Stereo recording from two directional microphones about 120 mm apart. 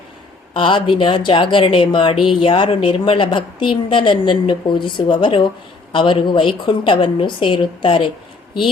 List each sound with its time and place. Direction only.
0.5 s a woman's voice: 45° left (ahead or behind)